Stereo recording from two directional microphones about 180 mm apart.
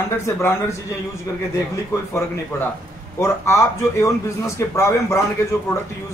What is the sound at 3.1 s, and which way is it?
A man's voice, 15° left (ahead or behind).